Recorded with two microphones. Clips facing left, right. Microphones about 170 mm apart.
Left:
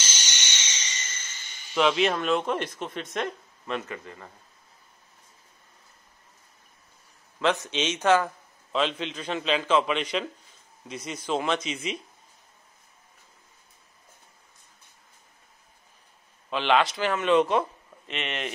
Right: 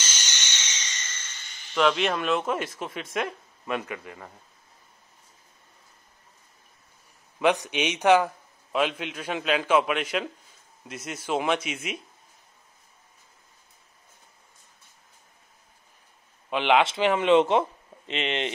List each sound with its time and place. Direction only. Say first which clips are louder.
0.5 s a sound: even; 10° left (ahead or behind)
1.7 s speech: even; 5° left (ahead or behind); by 4.3 s 10° right (ahead or behind)
7.3 s a man's voice: right 2 dB; 15° right (ahead or behind)
16.4 s speech: right 2 dB; 15° right (ahead or behind)